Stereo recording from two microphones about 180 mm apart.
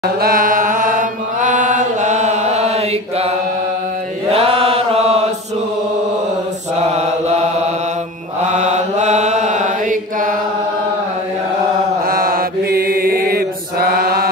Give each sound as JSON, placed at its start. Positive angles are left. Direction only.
{"t": 0.2, "sound": "mantra", "side_deg": -50}
{"t": 6.8, "sound": "mantra", "side_deg": -40}
{"t": 12.1, "sound": "mantra", "side_deg": -55}